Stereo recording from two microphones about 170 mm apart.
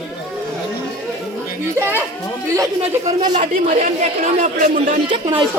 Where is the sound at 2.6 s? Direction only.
20° right (ahead or behind).